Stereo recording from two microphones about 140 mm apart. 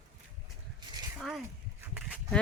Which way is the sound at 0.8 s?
30° right (ahead or behind).